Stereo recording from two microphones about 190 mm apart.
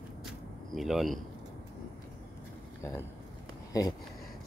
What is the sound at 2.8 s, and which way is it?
Speech, 15° left (ahead or behind).